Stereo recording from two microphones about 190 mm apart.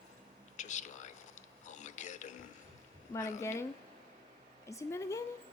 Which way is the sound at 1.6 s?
40° left (ahead or behind).